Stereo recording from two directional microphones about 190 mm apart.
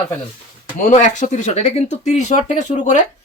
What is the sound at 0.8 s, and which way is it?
Speech, 40° left (ahead or behind).